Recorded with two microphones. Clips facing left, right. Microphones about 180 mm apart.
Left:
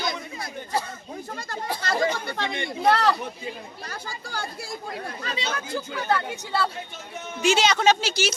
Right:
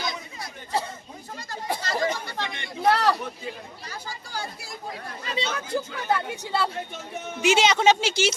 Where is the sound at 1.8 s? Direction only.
55° left (ahead or behind).